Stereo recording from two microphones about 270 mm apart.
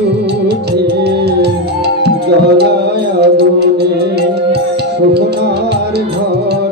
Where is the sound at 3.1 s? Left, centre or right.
Right.